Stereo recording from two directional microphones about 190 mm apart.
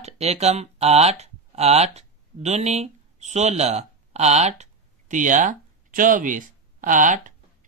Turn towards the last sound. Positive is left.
turn(degrees=-45)  # may be behind; listen again after turning